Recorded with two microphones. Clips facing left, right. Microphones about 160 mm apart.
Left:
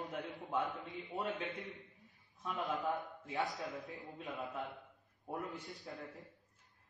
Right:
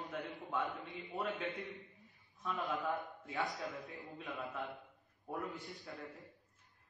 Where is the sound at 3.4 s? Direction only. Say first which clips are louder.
Even; centre (ahead or behind).